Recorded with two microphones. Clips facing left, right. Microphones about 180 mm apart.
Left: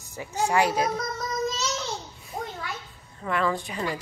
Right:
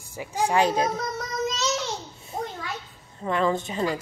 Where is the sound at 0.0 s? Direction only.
10° right (ahead or behind).